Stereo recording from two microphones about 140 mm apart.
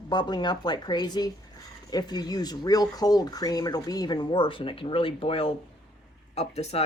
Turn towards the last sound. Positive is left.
turn(degrees=45)  # may be behind; listen again after turning